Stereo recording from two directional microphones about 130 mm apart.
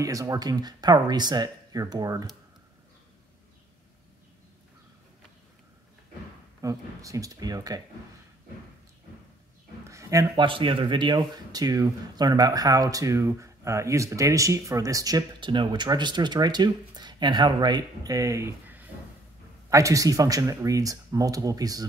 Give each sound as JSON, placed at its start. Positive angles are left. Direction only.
{"t": 0.0, "sound": "speech", "side_deg": -25}
{"t": 6.6, "sound": "speech", "side_deg": -25}
{"t": 9.8, "sound": "speech", "side_deg": -25}
{"t": 10.4, "sound": "speech", "side_deg": -40}